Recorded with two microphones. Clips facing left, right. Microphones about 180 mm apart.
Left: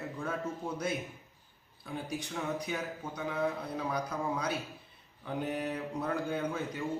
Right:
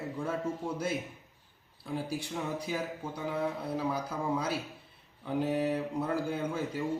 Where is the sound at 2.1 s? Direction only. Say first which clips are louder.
Right 1 dB; 30° right (ahead or behind).